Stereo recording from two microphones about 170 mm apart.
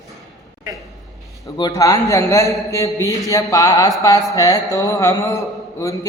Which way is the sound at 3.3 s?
20° left (ahead or behind).